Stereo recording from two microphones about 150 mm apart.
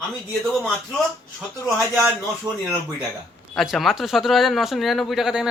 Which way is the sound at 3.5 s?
Centre (ahead or behind).